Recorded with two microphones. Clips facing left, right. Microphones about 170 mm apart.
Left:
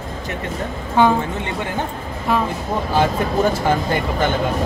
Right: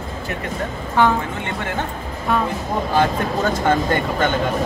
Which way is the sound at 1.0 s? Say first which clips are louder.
Left 2 dB; 15° left (ahead or behind).